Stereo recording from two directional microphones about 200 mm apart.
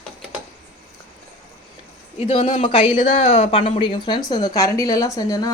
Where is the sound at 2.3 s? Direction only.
30° left (ahead or behind).